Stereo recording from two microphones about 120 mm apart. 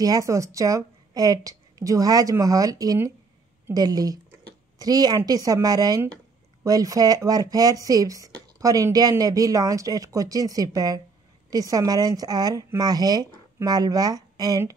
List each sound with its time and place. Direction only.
0.0 s a woman's voice: 30° right (ahead or behind)